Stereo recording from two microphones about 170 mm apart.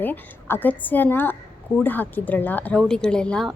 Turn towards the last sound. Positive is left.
turn(degrees=5)  # may be behind; listen again after turning